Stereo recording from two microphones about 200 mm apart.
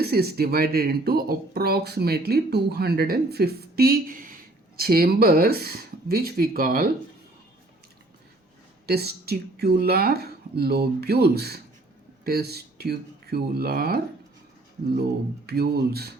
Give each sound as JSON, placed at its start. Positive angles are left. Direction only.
{"t": 0.0, "sound": "speech", "side_deg": -50}
{"t": 8.9, "sound": "speech", "side_deg": -50}
{"t": 15.4, "sound": "speech", "side_deg": -50}